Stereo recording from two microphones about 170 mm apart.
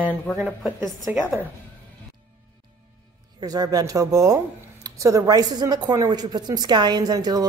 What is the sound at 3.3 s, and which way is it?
Speech, 20° right (ahead or behind).